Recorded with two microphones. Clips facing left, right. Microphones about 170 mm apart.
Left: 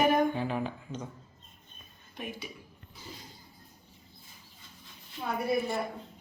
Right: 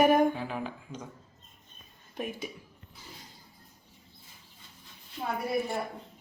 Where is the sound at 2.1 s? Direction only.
45° right (ahead or behind).